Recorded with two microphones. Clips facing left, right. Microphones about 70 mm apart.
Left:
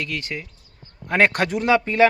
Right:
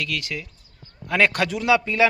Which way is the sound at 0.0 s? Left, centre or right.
Left.